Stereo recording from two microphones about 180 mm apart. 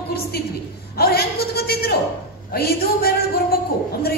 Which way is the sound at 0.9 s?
60° left (ahead or behind).